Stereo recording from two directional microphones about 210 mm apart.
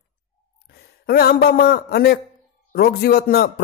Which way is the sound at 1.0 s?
45° left (ahead or behind).